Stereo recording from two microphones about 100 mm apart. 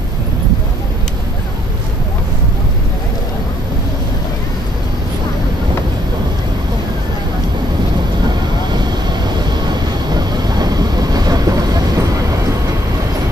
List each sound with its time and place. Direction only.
8.7 s vehicle: 45° right (ahead or behind)